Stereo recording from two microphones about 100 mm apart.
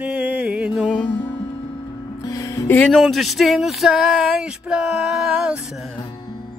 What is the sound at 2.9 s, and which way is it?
Speech, centre (ahead or behind).